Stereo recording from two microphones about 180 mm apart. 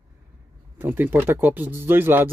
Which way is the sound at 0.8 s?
10° right (ahead or behind).